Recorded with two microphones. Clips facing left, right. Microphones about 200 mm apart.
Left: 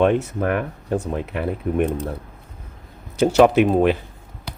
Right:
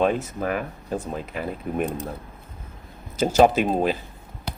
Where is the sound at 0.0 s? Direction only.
65° left (ahead or behind).